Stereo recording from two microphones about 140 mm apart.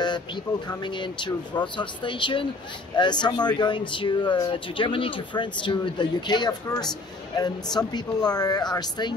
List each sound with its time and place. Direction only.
0.7 s speech: 35° left (ahead or behind)